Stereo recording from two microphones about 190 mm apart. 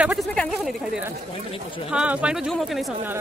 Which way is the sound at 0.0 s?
5° right (ahead or behind).